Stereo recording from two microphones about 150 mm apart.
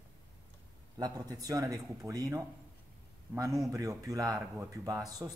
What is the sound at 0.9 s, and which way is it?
Speech, 25° right (ahead or behind).